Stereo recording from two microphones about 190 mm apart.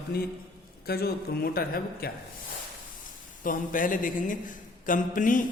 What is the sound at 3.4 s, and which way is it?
Speech, 45° left (ahead or behind).